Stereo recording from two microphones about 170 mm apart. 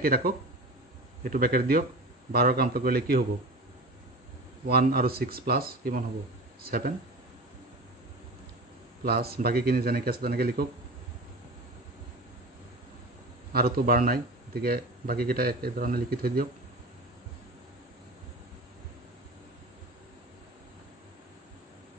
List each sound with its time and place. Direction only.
0.0 s speech: 60° right (ahead or behind)
4.6 s speech: 65° right (ahead or behind)
9.0 s speech: 65° right (ahead or behind)
13.5 s speech: 65° right (ahead or behind)